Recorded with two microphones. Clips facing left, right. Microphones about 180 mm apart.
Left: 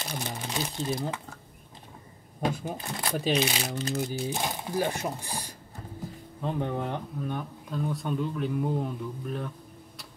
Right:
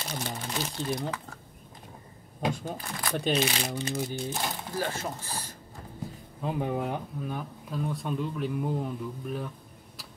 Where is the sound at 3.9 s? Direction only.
5° right (ahead or behind).